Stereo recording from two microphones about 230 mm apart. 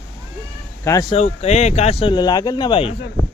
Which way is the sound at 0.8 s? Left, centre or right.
Centre.